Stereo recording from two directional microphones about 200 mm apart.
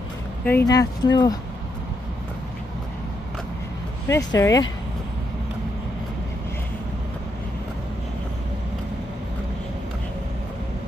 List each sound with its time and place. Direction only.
0.5 s speech: 15° left (ahead or behind)
4.1 s speech: 15° left (ahead or behind)